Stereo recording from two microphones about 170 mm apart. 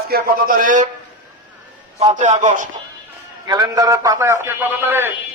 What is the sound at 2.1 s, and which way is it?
Speech, 40° right (ahead or behind).